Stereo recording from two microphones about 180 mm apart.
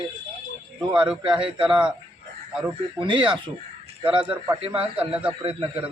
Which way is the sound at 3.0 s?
25° right (ahead or behind).